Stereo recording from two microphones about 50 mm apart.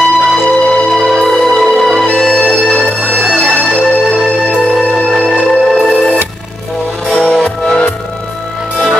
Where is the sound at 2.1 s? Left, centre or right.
Centre.